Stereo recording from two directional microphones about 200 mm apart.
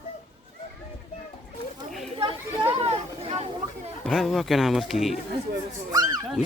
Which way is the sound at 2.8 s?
30° right (ahead or behind).